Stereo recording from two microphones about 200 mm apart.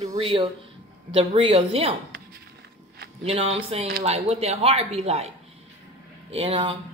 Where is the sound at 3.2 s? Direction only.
30° right (ahead or behind).